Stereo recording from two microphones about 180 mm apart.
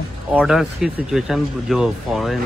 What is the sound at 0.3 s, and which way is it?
Speech, 5° right (ahead or behind).